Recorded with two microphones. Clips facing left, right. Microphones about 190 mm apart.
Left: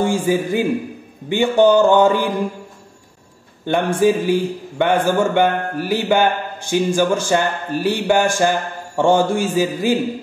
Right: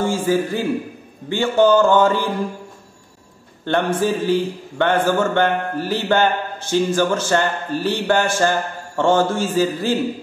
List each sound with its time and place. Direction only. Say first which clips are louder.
0.0 s a man's voice: left 1 dB; 15° left (ahead or behind)
3.6 s a man's voice: left 3 dB; 15° left (ahead or behind)